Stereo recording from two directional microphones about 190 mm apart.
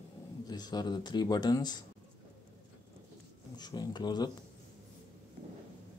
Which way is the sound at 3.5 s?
20° left (ahead or behind).